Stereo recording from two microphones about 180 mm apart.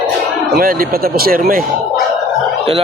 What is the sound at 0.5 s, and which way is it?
Speech, 55° right (ahead or behind).